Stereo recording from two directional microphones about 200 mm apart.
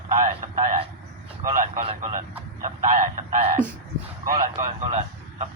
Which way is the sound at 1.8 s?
35° right (ahead or behind).